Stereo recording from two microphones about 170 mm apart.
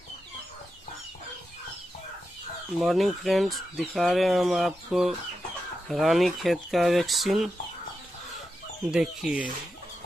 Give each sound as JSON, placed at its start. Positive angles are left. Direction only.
{"t": 2.8, "sound": "speech", "side_deg": 0}
{"t": 8.9, "sound": "speech", "side_deg": -5}